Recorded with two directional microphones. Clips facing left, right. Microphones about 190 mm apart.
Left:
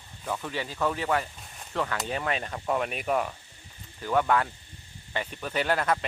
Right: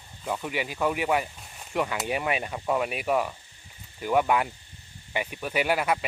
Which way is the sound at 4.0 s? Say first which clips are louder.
Right 1 dB; 15° right (ahead or behind).